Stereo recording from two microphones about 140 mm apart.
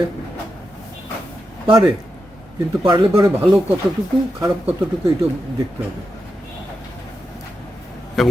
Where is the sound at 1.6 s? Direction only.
35° right (ahead or behind).